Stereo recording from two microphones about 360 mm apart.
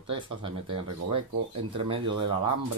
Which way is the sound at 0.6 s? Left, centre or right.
Right.